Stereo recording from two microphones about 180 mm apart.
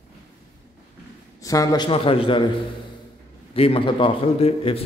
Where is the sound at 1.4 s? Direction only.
20° left (ahead or behind).